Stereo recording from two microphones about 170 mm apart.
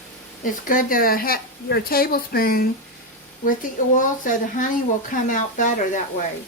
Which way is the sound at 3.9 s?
50° left (ahead or behind).